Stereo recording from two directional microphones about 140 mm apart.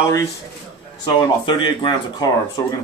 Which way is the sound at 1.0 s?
35° left (ahead or behind).